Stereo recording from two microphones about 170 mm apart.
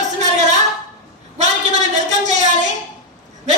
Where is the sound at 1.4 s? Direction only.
45° right (ahead or behind).